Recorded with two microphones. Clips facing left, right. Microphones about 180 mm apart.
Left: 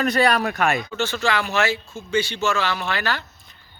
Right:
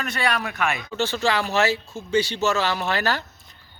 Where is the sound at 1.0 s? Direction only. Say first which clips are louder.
Even; 35° right (ahead or behind).